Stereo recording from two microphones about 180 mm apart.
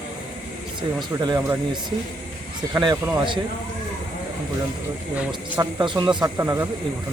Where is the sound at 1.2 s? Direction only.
20° right (ahead or behind).